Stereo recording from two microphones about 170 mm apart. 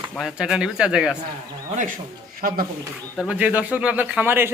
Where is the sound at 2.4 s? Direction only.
55° right (ahead or behind).